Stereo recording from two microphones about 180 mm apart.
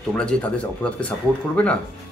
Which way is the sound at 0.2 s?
5° left (ahead or behind).